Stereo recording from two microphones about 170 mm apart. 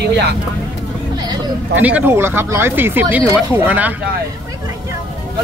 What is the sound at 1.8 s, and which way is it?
Speech, 10° right (ahead or behind).